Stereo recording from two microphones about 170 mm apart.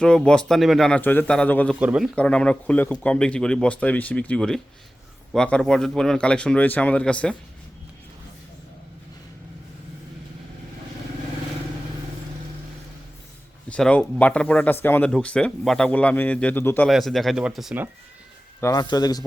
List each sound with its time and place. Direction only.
0.0 s speech: 5° left (ahead or behind)
1.8 s speech: 5° right (ahead or behind)
2.1 s speech: 5° left (ahead or behind)
13.7 s speech: 5° left (ahead or behind)
16.9 s speech: centre (ahead or behind)
18.6 s a man's voice: 25° left (ahead or behind)